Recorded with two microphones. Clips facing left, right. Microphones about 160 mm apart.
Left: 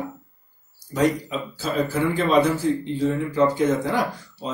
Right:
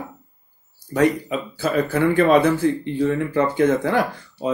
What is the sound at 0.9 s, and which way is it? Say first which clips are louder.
Speech: right 3 dB; 60° right (ahead or behind).